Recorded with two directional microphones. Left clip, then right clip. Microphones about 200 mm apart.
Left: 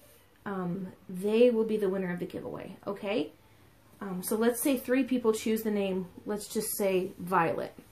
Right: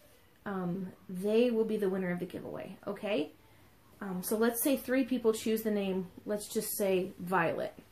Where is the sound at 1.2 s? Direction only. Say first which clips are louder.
Left 4 dB; 25° left (ahead or behind).